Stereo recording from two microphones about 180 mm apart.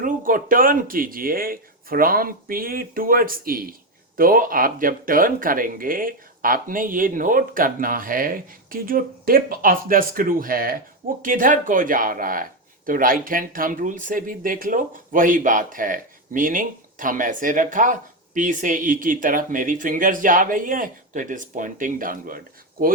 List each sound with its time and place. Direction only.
0.0 s speech: 50° right (ahead or behind)